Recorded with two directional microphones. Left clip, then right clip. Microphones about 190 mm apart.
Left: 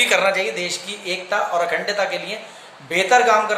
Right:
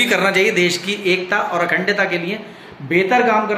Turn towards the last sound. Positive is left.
turn(degrees=5)  # may be behind; listen again after turning